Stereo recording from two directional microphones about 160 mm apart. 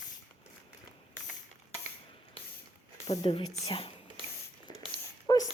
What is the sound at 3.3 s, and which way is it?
Speech, 35° left (ahead or behind).